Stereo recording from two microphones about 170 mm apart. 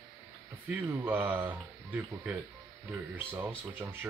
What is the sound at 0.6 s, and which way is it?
Speech, 15° right (ahead or behind).